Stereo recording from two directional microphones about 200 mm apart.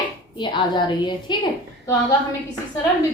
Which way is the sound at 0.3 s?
20° left (ahead or behind).